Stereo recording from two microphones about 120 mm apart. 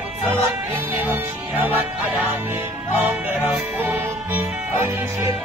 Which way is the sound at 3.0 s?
15° right (ahead or behind).